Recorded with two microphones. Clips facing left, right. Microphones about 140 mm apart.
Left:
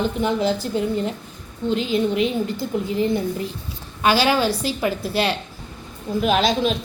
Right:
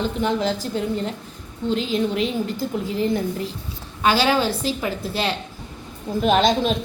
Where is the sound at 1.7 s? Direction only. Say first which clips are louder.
Left 1 dB; 5° left (ahead or behind).